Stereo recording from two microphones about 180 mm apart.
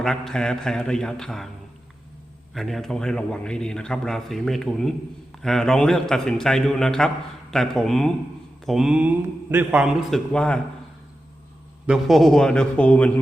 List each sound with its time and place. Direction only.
0.0 s a man's voice: centre (ahead or behind)
2.6 s a man's voice: centre (ahead or behind)
11.9 s a man's voice: centre (ahead or behind)